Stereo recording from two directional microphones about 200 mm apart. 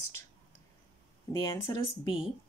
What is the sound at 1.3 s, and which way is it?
Speech, 15° left (ahead or behind).